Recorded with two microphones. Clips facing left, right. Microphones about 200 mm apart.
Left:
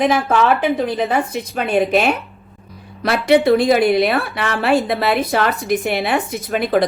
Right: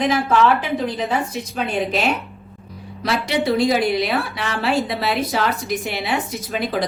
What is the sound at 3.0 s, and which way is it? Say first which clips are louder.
A woman's voice: left 7 dB; 55° left (ahead or behind).